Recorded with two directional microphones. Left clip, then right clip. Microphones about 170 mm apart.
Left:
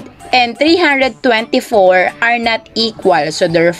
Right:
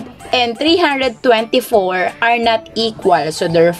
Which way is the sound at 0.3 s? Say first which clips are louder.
Left 3 dB; 25° left (ahead or behind).